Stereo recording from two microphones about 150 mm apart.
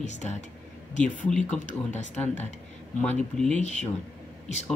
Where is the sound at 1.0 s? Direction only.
5° left (ahead or behind).